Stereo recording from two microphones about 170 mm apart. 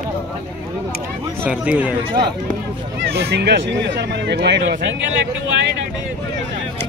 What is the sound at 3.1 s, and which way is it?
Speech, 75° right (ahead or behind).